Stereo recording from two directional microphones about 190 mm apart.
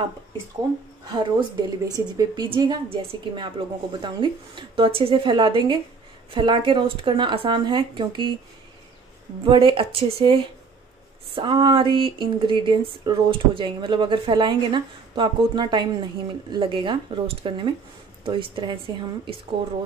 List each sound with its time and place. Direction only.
1.0 s speech: 25° right (ahead or behind)
9.4 s speech: 25° right (ahead or behind)
11.3 s speech: 25° right (ahead or behind)